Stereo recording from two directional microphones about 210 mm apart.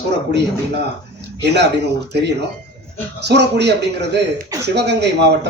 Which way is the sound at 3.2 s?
55° right (ahead or behind).